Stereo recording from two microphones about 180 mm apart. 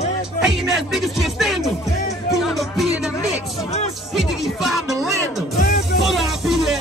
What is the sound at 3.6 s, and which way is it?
Music, 35° left (ahead or behind).